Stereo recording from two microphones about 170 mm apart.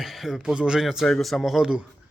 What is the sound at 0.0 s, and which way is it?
A man's voice, centre (ahead or behind).